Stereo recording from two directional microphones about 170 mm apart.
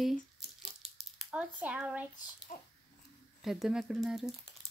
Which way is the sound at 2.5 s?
50° left (ahead or behind).